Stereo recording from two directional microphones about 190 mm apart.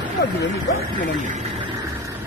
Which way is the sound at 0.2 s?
65° left (ahead or behind).